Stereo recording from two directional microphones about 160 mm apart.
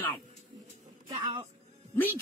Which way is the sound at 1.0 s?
30° right (ahead or behind).